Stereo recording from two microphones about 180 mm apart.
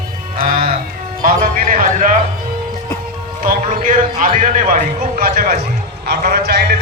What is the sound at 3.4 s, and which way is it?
A man's voice, 50° right (ahead or behind).